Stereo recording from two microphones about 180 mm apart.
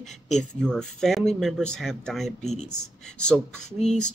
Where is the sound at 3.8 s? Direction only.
40° left (ahead or behind).